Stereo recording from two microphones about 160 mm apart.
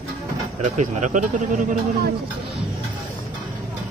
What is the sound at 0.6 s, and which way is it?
Speech, 50° right (ahead or behind).